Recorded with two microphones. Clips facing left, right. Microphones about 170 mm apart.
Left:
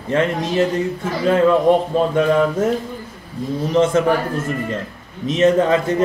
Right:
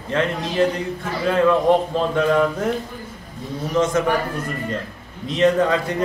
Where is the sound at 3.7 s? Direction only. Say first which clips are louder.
Left 3 dB; 30° left (ahead or behind).